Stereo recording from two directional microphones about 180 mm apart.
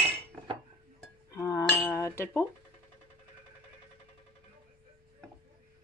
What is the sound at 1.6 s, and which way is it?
Cutlery, 5° left (ahead or behind).